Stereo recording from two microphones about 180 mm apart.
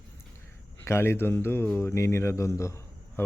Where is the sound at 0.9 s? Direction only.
15° left (ahead or behind).